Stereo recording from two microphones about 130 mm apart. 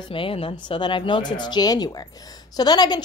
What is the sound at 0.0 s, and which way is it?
A woman's voice, 40° left (ahead or behind).